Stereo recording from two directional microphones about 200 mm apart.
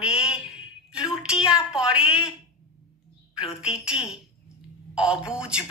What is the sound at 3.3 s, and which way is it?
A woman's voice, 5° right (ahead or behind).